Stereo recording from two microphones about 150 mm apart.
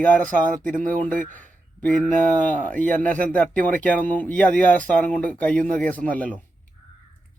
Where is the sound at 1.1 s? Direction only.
65° right (ahead or behind).